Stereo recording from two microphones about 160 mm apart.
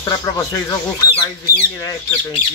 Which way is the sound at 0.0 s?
20° left (ahead or behind).